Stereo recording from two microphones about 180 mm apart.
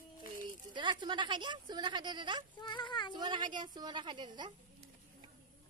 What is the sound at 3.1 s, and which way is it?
A woman's voice, 25° right (ahead or behind).